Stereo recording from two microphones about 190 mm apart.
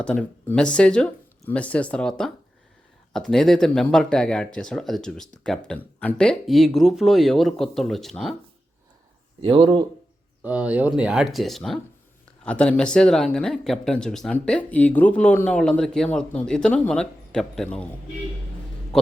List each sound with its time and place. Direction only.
0.0 s speech: 5° left (ahead or behind)
9.4 s speech: 25° right (ahead or behind)
10.4 s speech: 5° right (ahead or behind)